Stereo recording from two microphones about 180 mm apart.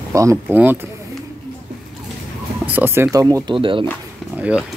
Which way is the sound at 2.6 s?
10° right (ahead or behind).